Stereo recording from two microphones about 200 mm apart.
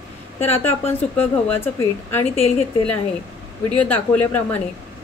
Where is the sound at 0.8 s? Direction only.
10° left (ahead or behind).